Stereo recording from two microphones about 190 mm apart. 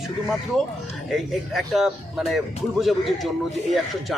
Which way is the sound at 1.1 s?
Centre (ahead or behind).